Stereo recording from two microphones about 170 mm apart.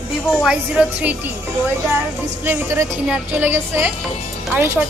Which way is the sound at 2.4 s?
15° right (ahead or behind).